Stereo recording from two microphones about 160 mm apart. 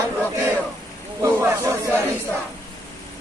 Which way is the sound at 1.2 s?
20° right (ahead or behind).